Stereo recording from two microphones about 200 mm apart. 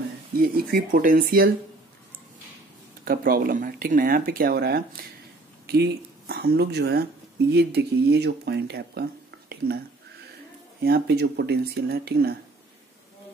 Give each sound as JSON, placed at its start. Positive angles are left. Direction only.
{"t": 0.4, "sound": "speech", "side_deg": -45}
{"t": 3.1, "sound": "speech", "side_deg": -45}